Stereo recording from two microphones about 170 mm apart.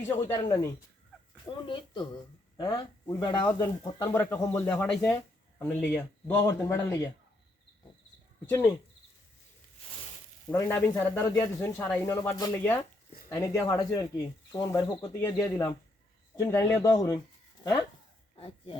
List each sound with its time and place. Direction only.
0.3 s speech: 20° left (ahead or behind)
8.4 s speech: 20° left (ahead or behind)
10.5 s speech: 15° left (ahead or behind)
18.3 s speech: 35° left (ahead or behind)